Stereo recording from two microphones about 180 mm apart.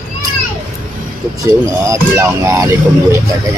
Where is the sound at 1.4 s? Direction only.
15° right (ahead or behind).